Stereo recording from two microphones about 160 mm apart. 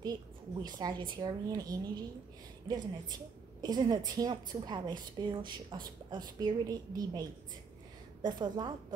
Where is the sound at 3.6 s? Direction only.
25° right (ahead or behind).